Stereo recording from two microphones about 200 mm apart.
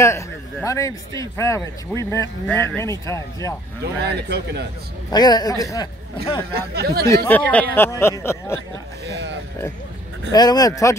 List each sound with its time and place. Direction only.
0.0 s a man's voice: 15° left (ahead or behind)
3.8 s a man's voice: 55° right (ahead or behind)
5.1 s a man's voice: 20° left (ahead or behind)
6.5 s speech: 50° right (ahead or behind)
7.2 s a man's voice: 10° left (ahead or behind)
10.3 s a man's voice: 20° left (ahead or behind)